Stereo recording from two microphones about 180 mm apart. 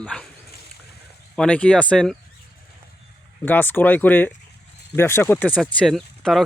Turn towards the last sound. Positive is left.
turn(degrees=0)  # may be behind; listen again after turning